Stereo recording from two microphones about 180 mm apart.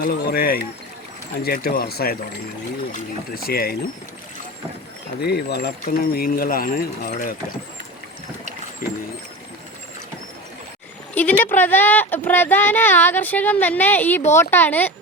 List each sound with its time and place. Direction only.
0.0 s speech: 55° left (ahead or behind)
5.2 s speech: 65° left (ahead or behind); by 7.3 s 45° left (ahead or behind)
8.8 s speech: 50° left (ahead or behind)
11.1 s speech: 10° left (ahead or behind)